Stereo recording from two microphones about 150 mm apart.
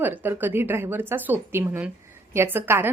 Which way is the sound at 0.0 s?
15° right (ahead or behind).